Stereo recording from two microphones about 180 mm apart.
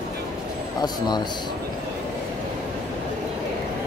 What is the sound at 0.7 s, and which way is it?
Speech, 25° left (ahead or behind).